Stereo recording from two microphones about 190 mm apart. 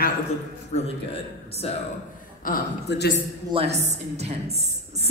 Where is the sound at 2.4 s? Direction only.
55° left (ahead or behind).